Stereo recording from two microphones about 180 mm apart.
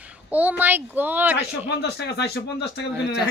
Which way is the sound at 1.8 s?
70° left (ahead or behind).